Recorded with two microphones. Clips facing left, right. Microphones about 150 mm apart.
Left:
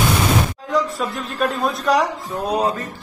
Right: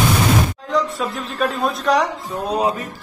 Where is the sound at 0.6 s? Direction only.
Centre (ahead or behind).